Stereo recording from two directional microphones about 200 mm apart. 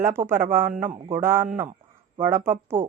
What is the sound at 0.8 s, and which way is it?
Speech, 40° right (ahead or behind).